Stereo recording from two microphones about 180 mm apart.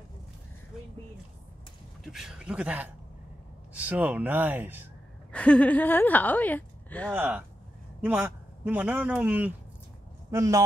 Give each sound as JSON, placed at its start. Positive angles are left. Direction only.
{"t": 2.1, "sound": "a man's voice", "side_deg": -5}
{"t": 5.3, "sound": "a woman's voice", "side_deg": 5}
{"t": 7.1, "sound": "a man's voice", "side_deg": -10}